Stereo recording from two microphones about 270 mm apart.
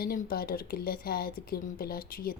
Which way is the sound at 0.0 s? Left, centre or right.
Left.